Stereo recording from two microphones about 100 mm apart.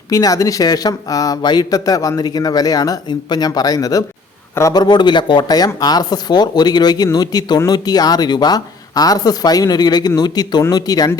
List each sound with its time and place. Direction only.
0.1 s speech: 35° left (ahead or behind)